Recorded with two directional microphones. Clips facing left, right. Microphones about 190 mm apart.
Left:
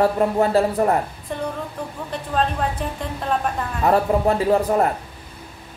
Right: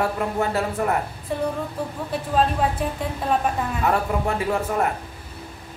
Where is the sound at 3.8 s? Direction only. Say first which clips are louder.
Left 6 dB; 35° left (ahead or behind).